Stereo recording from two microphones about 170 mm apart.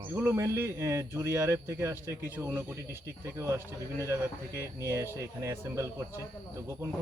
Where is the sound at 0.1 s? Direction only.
15° right (ahead or behind).